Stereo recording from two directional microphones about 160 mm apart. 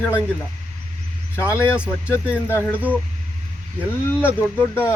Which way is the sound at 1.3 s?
15° left (ahead or behind).